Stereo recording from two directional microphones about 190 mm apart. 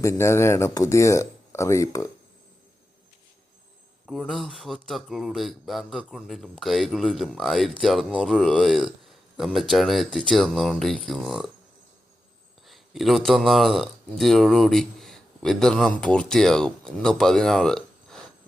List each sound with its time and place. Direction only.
0.0 s speech: 15° left (ahead or behind)
4.0 s speech: centre (ahead or behind)
12.6 s speech: centre (ahead or behind)